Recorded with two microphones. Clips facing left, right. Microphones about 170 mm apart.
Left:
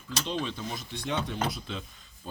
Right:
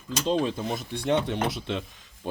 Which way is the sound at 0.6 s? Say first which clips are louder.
Right 6 dB; 55° right (ahead or behind).